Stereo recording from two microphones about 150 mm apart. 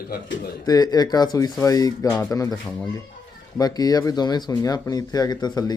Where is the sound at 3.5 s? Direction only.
25° left (ahead or behind).